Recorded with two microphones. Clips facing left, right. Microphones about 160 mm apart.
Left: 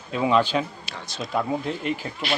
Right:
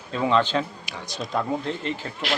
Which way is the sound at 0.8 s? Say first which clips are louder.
Right 1 dB; 15° right (ahead or behind).